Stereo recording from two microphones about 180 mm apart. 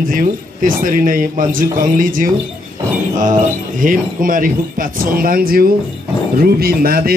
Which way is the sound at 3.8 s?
50° right (ahead or behind).